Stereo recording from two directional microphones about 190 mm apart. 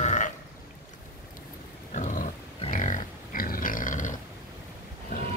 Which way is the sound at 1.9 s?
40° left (ahead or behind).